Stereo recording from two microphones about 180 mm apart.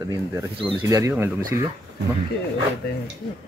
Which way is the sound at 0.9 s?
15° right (ahead or behind).